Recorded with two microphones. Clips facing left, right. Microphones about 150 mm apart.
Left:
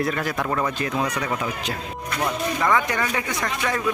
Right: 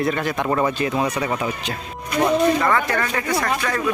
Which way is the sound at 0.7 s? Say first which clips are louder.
Right 3 dB; 5° right (ahead or behind).